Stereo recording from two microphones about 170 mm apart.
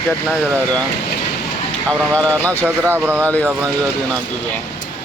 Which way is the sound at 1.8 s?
10° left (ahead or behind).